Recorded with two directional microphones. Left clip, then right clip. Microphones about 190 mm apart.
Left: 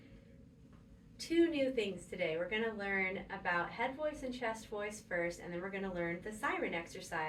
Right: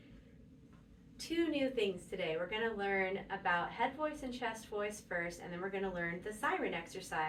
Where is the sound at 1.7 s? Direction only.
15° right (ahead or behind).